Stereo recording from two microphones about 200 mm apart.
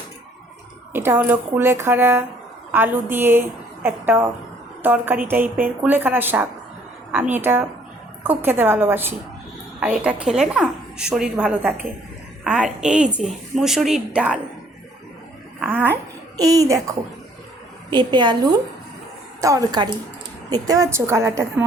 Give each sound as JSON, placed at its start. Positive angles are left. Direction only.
{"t": 0.9, "sound": "a woman's voice", "side_deg": -10}
{"t": 15.7, "sound": "speech", "side_deg": -10}
{"t": 17.9, "sound": "a woman's voice", "side_deg": -20}